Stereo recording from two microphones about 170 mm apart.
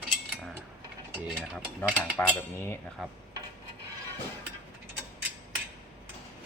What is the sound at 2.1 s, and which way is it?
Cutlery, 15° left (ahead or behind).